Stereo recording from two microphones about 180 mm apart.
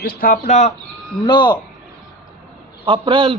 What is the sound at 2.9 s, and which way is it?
Speech, 30° right (ahead or behind).